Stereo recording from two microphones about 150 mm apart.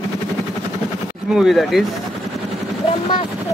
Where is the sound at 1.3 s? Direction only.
Centre (ahead or behind).